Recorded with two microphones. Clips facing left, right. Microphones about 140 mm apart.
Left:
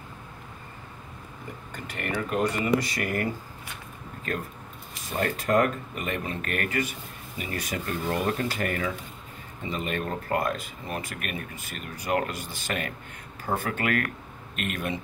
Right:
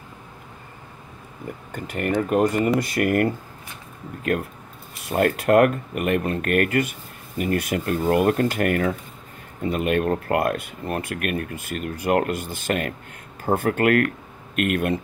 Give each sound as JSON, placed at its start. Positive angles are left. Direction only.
{"t": 1.7, "sound": "speech", "side_deg": -45}
{"t": 5.0, "sound": "speech", "side_deg": -60}